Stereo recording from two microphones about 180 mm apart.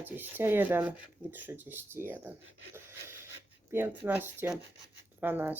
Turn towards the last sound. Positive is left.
turn(degrees=-10)  # may be behind; listen again after turning